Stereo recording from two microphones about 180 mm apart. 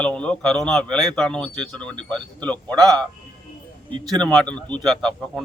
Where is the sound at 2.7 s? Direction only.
20° right (ahead or behind).